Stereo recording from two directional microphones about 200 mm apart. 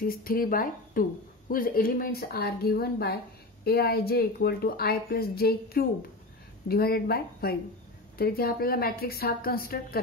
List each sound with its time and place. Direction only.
0.0 s a woman's voice: 45° left (ahead or behind)